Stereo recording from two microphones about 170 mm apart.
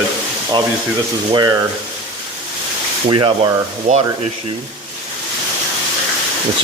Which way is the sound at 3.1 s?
30° right (ahead or behind).